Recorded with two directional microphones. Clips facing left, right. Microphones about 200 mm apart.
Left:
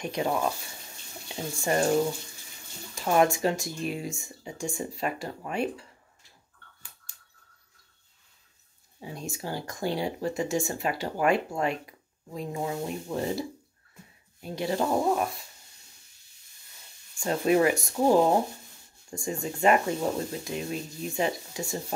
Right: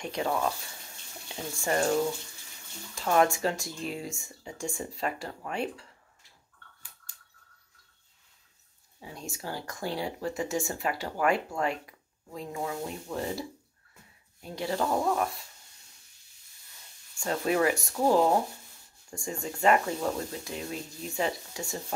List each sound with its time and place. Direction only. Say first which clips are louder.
0.0 s speech: left 2 dB; 15° left (ahead or behind)
3.0 s speech: left 2 dB; 15° left (ahead or behind)
9.3 s speech: left 1 dB; 20° left (ahead or behind)
17.2 s speech: left 4 dB; 20° left (ahead or behind)